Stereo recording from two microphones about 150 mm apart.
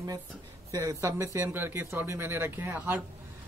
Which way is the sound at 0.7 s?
20° right (ahead or behind).